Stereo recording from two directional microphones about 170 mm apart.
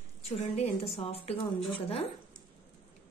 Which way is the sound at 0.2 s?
40° left (ahead or behind).